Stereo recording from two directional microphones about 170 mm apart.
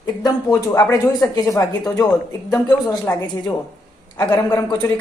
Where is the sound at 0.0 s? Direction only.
20° left (ahead or behind).